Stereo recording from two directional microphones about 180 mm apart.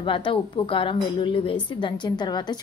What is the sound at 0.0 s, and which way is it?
A woman's voice, 30° left (ahead or behind).